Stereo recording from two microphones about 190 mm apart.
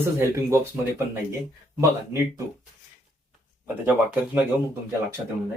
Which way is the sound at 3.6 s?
10° right (ahead or behind).